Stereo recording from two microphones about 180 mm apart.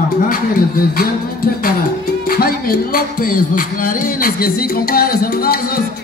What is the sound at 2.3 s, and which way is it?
Music, 55° left (ahead or behind).